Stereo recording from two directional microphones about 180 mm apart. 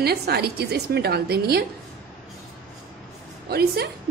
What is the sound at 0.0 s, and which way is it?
A woman's voice, 65° right (ahead or behind).